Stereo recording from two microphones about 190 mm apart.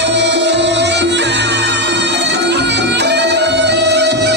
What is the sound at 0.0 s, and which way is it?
Music, 65° right (ahead or behind).